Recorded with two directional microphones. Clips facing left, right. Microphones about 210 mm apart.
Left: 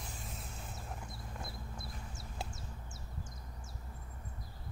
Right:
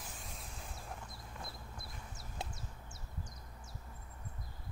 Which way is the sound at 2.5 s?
25° left (ahead or behind).